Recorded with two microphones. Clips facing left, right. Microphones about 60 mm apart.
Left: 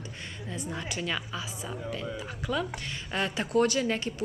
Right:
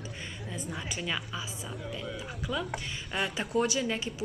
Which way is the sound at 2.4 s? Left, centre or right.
Centre.